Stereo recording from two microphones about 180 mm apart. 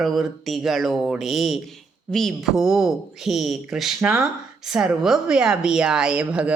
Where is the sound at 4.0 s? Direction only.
10° right (ahead or behind).